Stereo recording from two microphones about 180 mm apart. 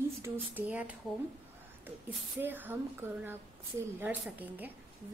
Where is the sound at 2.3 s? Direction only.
10° right (ahead or behind).